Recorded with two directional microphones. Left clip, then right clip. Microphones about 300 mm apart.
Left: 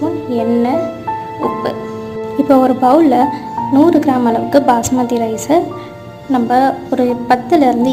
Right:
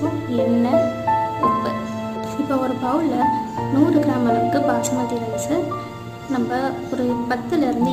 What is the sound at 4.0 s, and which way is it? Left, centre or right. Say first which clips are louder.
A woman's voice: left 5 dB; left.